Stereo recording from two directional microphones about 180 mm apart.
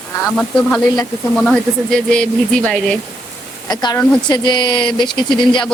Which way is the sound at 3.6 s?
20° left (ahead or behind).